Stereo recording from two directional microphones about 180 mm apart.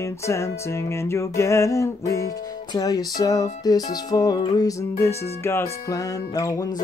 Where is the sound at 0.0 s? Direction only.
15° left (ahead or behind).